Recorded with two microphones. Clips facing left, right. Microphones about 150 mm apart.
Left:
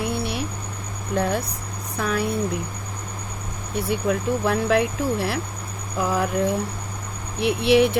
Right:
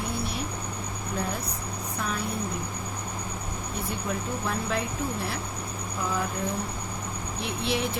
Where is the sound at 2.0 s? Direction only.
75° left (ahead or behind).